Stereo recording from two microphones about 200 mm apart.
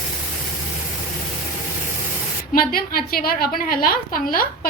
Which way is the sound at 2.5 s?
45° left (ahead or behind).